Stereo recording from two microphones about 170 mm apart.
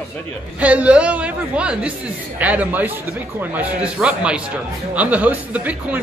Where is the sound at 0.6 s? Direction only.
10° right (ahead or behind).